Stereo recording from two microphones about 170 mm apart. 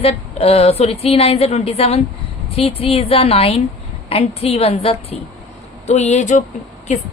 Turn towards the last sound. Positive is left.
turn(degrees=45)  # may be behind; listen again after turning